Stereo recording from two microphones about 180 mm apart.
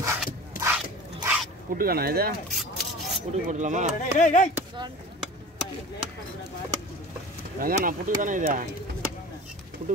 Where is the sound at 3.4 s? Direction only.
45° right (ahead or behind).